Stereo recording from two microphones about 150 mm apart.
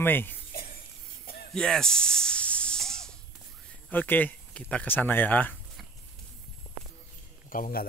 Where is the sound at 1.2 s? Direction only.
90° left.